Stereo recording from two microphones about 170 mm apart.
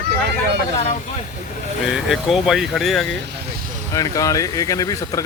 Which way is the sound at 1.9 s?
Centre (ahead or behind).